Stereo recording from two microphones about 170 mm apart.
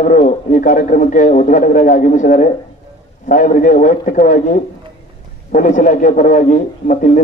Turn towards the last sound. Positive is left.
turn(degrees=50)  # may be behind; listen again after turning